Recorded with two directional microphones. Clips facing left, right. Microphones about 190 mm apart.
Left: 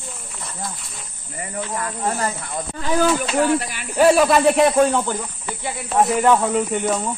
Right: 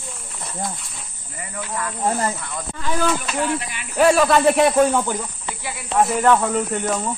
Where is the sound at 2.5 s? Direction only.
35° left (ahead or behind).